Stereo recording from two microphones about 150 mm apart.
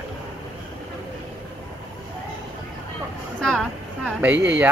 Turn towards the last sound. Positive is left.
turn(degrees=-10)  # may be behind; listen again after turning